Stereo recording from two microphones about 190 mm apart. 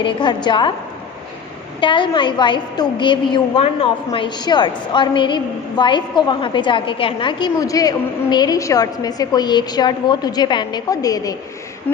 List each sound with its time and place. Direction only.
0.0 s a woman's voice: 25° left (ahead or behind)
1.8 s a woman's voice: 25° left (ahead or behind)